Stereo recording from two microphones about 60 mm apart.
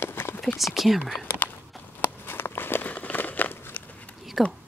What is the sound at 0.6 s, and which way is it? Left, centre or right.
Speech, centre.